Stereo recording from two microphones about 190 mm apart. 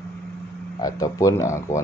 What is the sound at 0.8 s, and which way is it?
Speech, 20° left (ahead or behind).